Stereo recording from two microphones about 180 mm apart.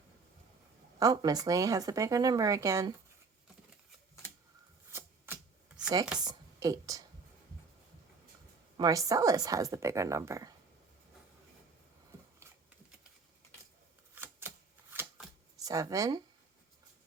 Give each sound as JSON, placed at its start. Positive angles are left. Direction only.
{"t": 0.9, "sound": "speech", "side_deg": -20}
{"t": 4.9, "sound": "chopping", "side_deg": -15}
{"t": 6.1, "sound": "a woman's voice", "side_deg": -20}
{"t": 8.8, "sound": "speech", "side_deg": -20}
{"t": 14.2, "sound": "shuffling cards", "side_deg": -10}